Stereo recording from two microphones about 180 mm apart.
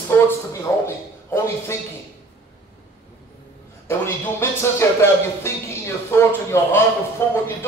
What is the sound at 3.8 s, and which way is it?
A man's voice, 15° left (ahead or behind).